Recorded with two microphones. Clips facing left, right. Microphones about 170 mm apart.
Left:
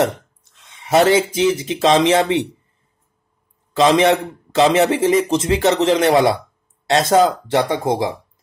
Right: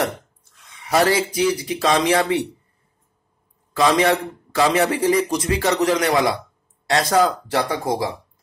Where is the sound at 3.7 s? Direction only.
20° left (ahead or behind).